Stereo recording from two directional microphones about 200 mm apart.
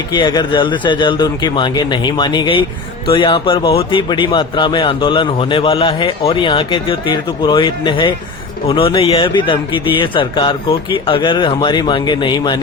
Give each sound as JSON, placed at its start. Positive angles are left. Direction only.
{"t": 0.1, "sound": "speech", "side_deg": 20}